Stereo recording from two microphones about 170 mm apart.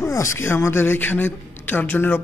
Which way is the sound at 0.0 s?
15° left (ahead or behind).